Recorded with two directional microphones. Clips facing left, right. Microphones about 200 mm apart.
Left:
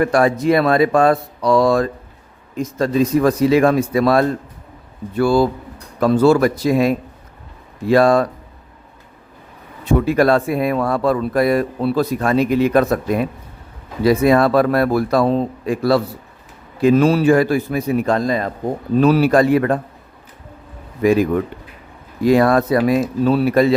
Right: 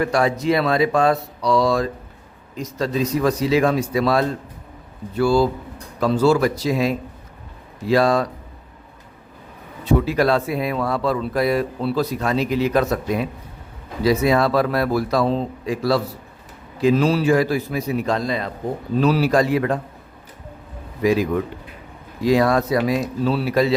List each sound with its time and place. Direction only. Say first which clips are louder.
0.0 s a man's voice: left 4 dB; 55° left (ahead or behind)
9.8 s speech: left 3 dB; 50° left (ahead or behind)
21.0 s a man's voice: left 4 dB; 55° left (ahead or behind)